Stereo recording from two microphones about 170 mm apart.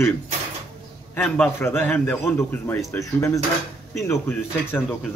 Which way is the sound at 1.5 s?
15° left (ahead or behind).